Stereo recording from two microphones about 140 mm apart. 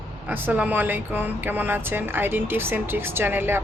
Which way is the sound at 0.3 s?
15° right (ahead or behind).